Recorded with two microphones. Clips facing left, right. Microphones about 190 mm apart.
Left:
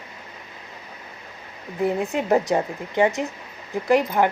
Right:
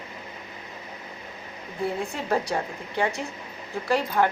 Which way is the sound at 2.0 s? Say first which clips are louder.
Left 6 dB; 20° left (ahead or behind).